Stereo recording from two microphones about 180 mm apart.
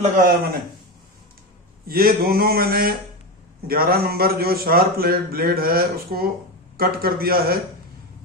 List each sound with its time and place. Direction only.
0.0 s speech: 50° right (ahead or behind)
1.9 s a man's voice: 55° right (ahead or behind)